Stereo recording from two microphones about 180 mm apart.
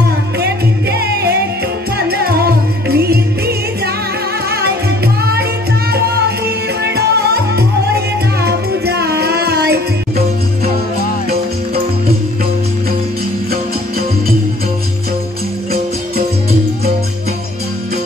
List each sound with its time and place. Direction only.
0.4 s music: 65° right (ahead or behind)